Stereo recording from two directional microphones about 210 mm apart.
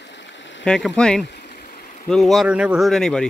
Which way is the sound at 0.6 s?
5° left (ahead or behind).